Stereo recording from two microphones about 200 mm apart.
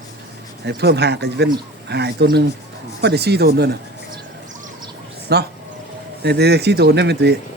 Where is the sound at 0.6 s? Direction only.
55° right (ahead or behind).